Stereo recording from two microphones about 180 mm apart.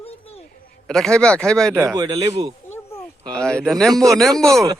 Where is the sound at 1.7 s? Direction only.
20° right (ahead or behind).